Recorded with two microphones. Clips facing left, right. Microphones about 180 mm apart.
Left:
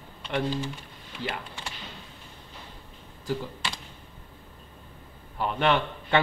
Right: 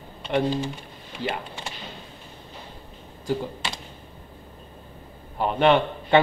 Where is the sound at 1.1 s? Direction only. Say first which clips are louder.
Right 5 dB; 20° right (ahead or behind).